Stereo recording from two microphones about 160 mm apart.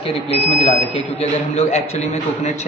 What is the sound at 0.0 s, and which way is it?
A man's voice, 35° left (ahead or behind).